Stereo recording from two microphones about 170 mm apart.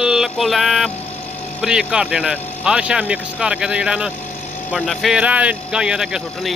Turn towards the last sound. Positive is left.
turn(degrees=-5)  # may be behind; listen again after turning